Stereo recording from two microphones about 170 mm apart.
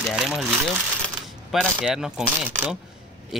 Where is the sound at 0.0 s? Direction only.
5° right (ahead or behind).